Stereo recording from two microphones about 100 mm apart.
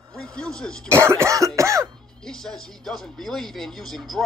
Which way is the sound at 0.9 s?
25° right (ahead or behind).